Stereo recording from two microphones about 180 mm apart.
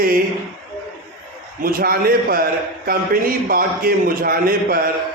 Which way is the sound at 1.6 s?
55° right (ahead or behind).